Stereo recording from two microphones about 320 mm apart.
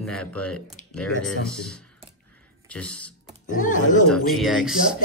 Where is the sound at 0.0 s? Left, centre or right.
Centre.